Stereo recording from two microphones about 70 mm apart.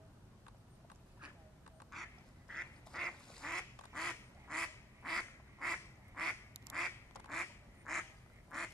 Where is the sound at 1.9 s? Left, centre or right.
Centre.